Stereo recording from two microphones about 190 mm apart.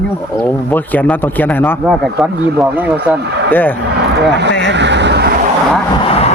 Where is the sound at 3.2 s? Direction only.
60° right (ahead or behind).